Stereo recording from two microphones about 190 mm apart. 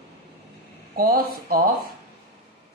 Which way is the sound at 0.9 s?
50° right (ahead or behind).